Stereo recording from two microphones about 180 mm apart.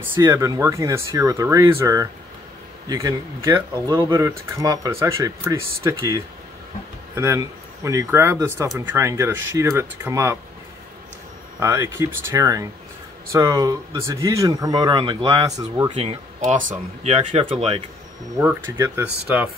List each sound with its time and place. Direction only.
0.0 s speech: 10° right (ahead or behind)
11.6 s speech: 15° right (ahead or behind)
15.9 s speech: 35° right (ahead or behind)
16.3 s speech: 45° right (ahead or behind)
18.4 s speech: 10° right (ahead or behind)